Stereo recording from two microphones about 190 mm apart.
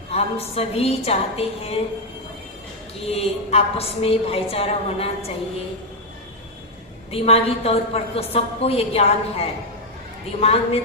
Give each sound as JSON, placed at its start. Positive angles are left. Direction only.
{"t": 0.1, "sound": "a woman's voice", "side_deg": 30}
{"t": 3.1, "sound": "a woman's voice", "side_deg": 30}
{"t": 7.1, "sound": "a woman's voice", "side_deg": 30}